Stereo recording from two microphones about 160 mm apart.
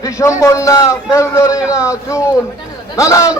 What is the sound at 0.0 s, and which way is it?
A man's voice, 20° left (ahead or behind).